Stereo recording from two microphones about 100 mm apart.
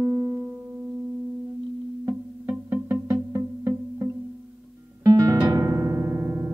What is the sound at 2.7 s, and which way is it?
Music, 25° right (ahead or behind).